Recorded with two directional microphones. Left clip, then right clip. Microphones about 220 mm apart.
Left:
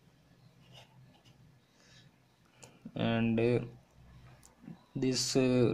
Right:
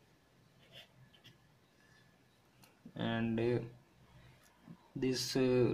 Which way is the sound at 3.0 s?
15° left (ahead or behind).